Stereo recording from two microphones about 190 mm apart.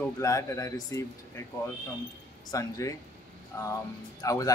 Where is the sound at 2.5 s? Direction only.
15° left (ahead or behind).